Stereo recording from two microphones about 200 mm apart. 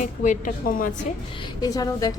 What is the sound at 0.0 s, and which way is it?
Speech, 40° left (ahead or behind).